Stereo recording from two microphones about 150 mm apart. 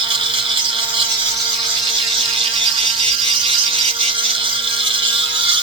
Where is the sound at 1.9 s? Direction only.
35° right (ahead or behind).